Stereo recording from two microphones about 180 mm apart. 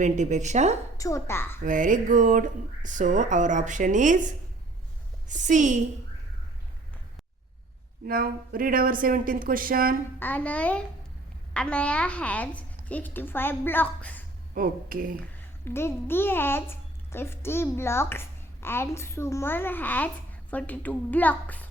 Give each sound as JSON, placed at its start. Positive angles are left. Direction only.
{"t": 0.0, "sound": "a woman's voice", "side_deg": -40}
{"t": 0.9, "sound": "a woman's voice", "side_deg": 20}
{"t": 1.6, "sound": "speech", "side_deg": -45}
{"t": 5.3, "sound": "speech", "side_deg": -45}
{"t": 8.0, "sound": "speech", "side_deg": -55}
{"t": 10.2, "sound": "a child's voice", "side_deg": 10}
{"t": 14.5, "sound": "speech", "side_deg": -50}
{"t": 15.6, "sound": "a child's voice", "side_deg": 15}